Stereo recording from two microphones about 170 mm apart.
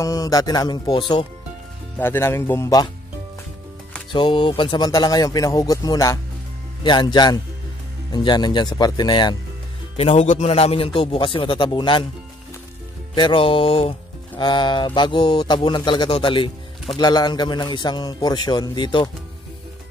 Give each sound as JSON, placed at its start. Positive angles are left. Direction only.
{"t": 0.0, "sound": "speech", "side_deg": 20}
{"t": 2.0, "sound": "speech", "side_deg": 15}
{"t": 4.1, "sound": "speech", "side_deg": 30}
{"t": 9.9, "sound": "a man's voice", "side_deg": 40}
{"t": 13.1, "sound": "a man's voice", "side_deg": 30}